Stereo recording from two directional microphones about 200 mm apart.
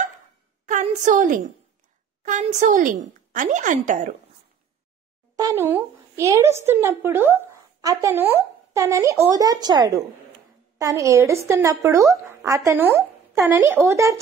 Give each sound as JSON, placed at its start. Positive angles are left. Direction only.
{"t": 0.7, "sound": "a sound", "side_deg": -40}
{"t": 2.2, "sound": "a woman's voice", "side_deg": -40}
{"t": 5.3, "sound": "speech", "side_deg": -15}